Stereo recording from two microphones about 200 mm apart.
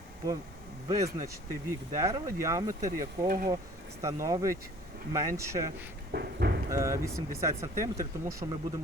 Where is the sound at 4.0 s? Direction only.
15° right (ahead or behind).